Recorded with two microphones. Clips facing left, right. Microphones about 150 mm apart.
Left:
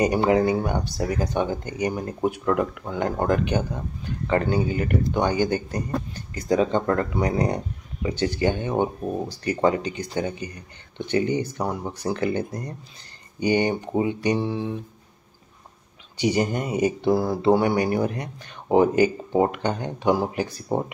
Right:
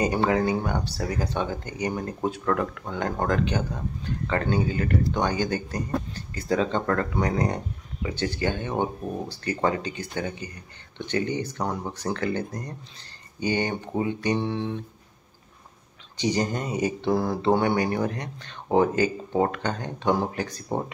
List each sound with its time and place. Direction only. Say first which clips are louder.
0.0 s speech: left 3 dB; 20° left (ahead or behind)
8.1 s speech: left 4 dB; 15° left (ahead or behind)
14.4 s a sound: left 1 dB; 5° left (ahead or behind)
16.2 s speech: left 3 dB; 10° left (ahead or behind)